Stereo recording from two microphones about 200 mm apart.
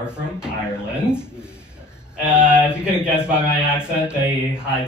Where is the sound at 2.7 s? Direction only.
5° right (ahead or behind).